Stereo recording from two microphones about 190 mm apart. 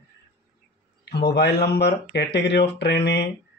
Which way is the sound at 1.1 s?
60° left (ahead or behind).